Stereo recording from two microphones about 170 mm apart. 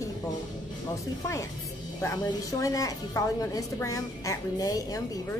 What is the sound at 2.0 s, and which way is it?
A woman's voice, 20° left (ahead or behind).